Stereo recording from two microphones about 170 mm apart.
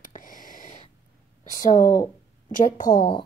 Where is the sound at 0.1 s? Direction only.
50° left (ahead or behind).